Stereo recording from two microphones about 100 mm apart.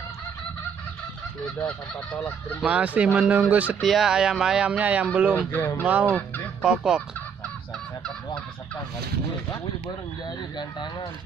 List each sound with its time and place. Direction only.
2.6 s speech: 15° right (ahead or behind)
3.8 s speech: 5° right (ahead or behind)
5.5 s speech: 20° left (ahead or behind)
6.0 s fowl: 15° left (ahead or behind)
6.6 s speech: 10° right (ahead or behind)
10.2 s speech: 50° left (ahead or behind)